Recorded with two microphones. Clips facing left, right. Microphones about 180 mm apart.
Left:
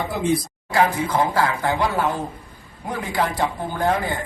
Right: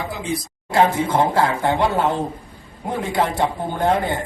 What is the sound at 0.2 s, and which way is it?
Speech, 55° left (ahead or behind).